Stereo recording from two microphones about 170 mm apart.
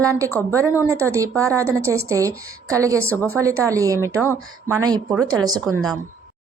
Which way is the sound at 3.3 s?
15° right (ahead or behind).